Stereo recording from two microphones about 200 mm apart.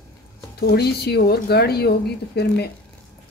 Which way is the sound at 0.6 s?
55° left (ahead or behind).